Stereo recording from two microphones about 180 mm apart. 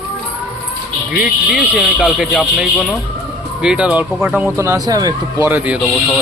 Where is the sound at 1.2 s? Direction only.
5° right (ahead or behind).